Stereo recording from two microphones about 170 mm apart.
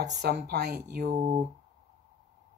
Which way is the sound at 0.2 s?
75° right (ahead or behind).